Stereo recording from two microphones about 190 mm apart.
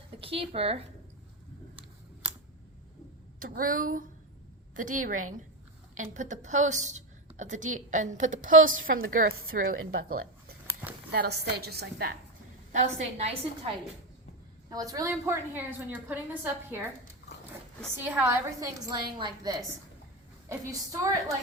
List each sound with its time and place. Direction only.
0.2 s speech: 30° right (ahead or behind)
3.4 s a woman's voice: 45° right (ahead or behind)
11.1 s a woman's voice: 60° right (ahead or behind)
12.8 s a woman's voice: 35° right (ahead or behind)
14.7 s a woman's voice: 20° right (ahead or behind)
17.9 s a woman's voice: 10° right (ahead or behind)